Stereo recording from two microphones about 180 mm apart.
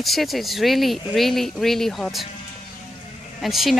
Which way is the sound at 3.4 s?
Centre (ahead or behind).